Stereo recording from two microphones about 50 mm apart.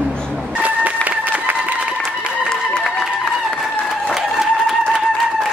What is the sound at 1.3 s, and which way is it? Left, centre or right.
Applause, right.